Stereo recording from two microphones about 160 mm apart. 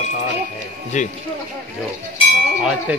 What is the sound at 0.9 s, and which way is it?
Speech, 50° left (ahead or behind).